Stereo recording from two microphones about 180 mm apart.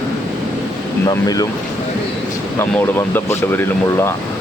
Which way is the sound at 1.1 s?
20° left (ahead or behind).